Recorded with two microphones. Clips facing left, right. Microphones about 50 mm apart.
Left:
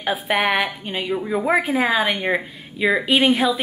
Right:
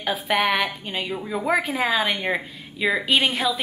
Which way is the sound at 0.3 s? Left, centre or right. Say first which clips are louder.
Left 1 dB; centre.